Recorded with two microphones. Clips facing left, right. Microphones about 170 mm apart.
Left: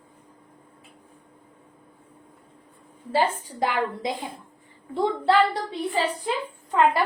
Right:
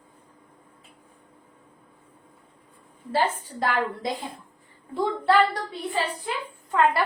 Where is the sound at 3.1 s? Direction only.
15° left (ahead or behind).